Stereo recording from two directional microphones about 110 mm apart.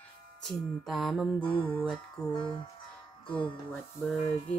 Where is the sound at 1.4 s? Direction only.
50° left (ahead or behind).